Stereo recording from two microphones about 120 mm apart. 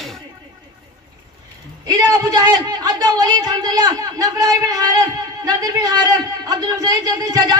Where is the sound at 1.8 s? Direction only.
30° right (ahead or behind).